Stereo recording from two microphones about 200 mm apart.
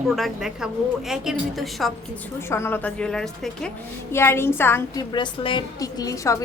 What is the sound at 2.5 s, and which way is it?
A woman's voice, 10° left (ahead or behind).